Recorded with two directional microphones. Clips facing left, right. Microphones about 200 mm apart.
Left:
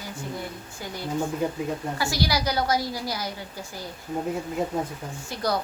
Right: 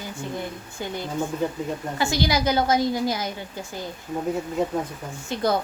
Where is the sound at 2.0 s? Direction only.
20° right (ahead or behind).